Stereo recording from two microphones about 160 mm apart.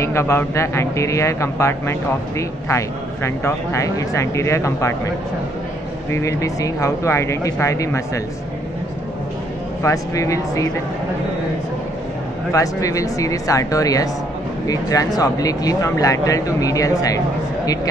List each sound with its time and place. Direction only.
0.0 s a man's voice: 15° left (ahead or behind)
6.1 s speech: 20° left (ahead or behind)
9.8 s speech: 20° left (ahead or behind)
12.5 s speech: 20° left (ahead or behind)